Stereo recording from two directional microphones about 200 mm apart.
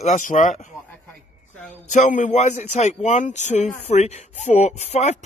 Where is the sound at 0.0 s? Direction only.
40° left (ahead or behind).